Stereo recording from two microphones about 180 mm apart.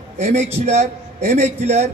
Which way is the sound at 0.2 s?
40° right (ahead or behind).